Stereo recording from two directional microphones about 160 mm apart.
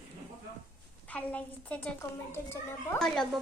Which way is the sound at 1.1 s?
10° left (ahead or behind).